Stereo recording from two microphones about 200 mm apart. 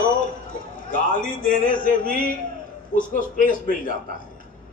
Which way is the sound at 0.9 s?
40° left (ahead or behind).